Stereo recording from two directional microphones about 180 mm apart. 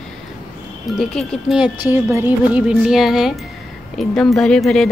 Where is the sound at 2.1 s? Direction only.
10° right (ahead or behind).